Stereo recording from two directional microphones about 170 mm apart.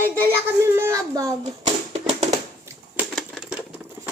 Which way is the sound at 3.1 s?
Centre (ahead or behind).